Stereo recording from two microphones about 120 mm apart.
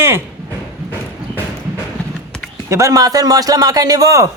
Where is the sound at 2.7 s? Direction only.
25° right (ahead or behind).